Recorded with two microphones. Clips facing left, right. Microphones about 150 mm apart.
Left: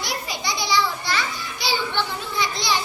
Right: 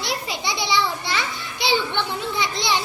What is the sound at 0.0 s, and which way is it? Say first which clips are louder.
Children playing: right 2 dB; 25° right (ahead or behind).